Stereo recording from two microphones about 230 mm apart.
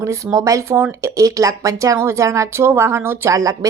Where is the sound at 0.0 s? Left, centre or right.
Centre.